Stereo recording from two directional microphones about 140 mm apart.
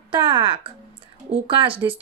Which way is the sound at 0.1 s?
35° right (ahead or behind).